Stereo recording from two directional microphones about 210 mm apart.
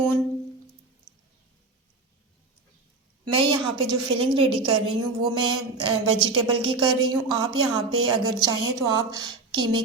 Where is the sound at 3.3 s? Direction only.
25° right (ahead or behind).